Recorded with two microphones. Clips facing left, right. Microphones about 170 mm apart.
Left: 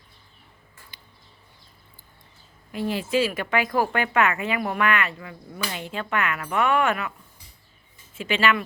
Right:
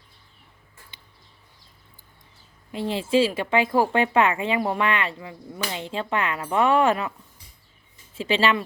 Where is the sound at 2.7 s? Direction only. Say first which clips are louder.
Right 2 dB; 25° right (ahead or behind).